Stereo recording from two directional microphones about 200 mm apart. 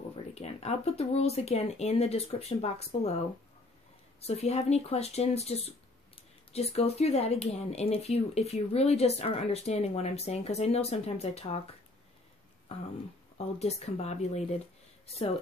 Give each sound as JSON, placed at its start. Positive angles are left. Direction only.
{"t": 0.3, "sound": "speech", "side_deg": 30}
{"t": 4.2, "sound": "speech", "side_deg": 30}
{"t": 13.6, "sound": "speech", "side_deg": 30}